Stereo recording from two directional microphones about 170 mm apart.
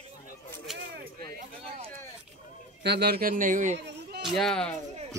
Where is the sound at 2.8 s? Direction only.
75° right (ahead or behind); by 3.7 s 50° right (ahead or behind).